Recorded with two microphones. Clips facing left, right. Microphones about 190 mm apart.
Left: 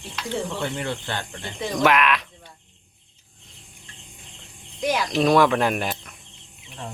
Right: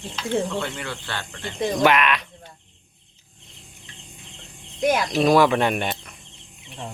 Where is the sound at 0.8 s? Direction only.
20° left (ahead or behind).